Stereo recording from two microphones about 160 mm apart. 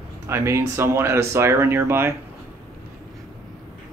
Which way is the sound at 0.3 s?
15° right (ahead or behind).